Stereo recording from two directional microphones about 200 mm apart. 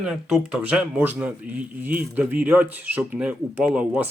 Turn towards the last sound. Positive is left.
turn(degrees=-5)  # may be behind; listen again after turning